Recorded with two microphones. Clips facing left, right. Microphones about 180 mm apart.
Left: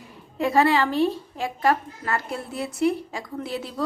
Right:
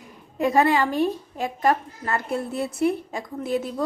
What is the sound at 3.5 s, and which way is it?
Speech, 45° right (ahead or behind).